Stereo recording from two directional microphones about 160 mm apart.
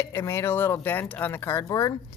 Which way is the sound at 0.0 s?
15° left (ahead or behind).